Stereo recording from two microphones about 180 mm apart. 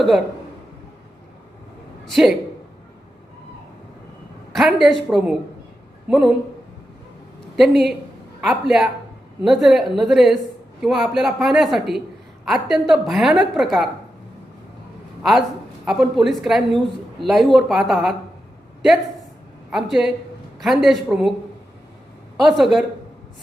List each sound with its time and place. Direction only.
2.0 s a man's voice: centre (ahead or behind)
4.5 s a woman's voice: centre (ahead or behind)
7.5 s a woman's voice: centre (ahead or behind)
15.2 s a woman's voice: centre (ahead or behind)
19.7 s a woman's voice: centre (ahead or behind)
22.4 s a woman's voice: centre (ahead or behind)